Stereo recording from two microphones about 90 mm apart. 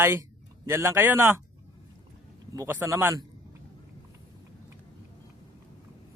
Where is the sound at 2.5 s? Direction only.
25° right (ahead or behind).